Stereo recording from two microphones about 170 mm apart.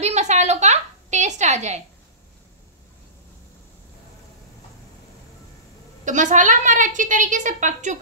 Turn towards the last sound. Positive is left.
turn(degrees=-45)  # may be behind; listen again after turning